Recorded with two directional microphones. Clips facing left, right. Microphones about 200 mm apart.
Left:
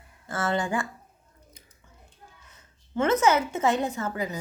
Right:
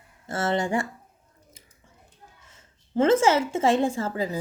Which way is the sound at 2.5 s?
30° right (ahead or behind).